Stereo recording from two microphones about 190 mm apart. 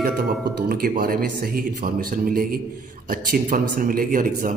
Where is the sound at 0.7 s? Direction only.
50° right (ahead or behind).